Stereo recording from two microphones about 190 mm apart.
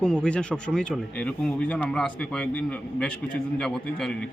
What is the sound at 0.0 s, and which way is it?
A man's voice, 5° left (ahead or behind).